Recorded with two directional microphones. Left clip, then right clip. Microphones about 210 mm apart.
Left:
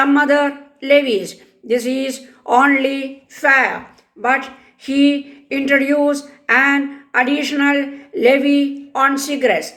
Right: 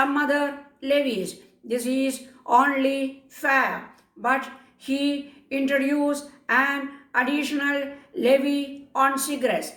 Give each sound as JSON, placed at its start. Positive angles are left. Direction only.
{"t": 0.0, "sound": "speech", "side_deg": 30}